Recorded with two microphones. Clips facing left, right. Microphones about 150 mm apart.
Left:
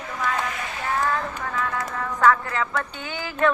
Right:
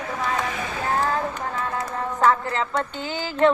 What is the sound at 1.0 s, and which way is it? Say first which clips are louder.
Speech: right 1 dB; 30° right (ahead or behind).